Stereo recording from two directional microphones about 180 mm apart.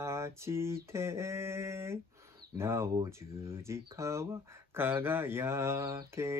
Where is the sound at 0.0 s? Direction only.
15° right (ahead or behind).